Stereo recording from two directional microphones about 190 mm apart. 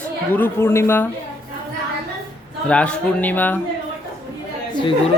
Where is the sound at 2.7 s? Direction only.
5° left (ahead or behind).